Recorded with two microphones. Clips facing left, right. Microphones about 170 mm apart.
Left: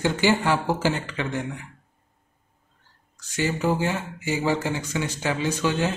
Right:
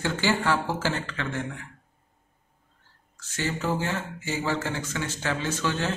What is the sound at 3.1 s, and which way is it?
Speech, 15° left (ahead or behind).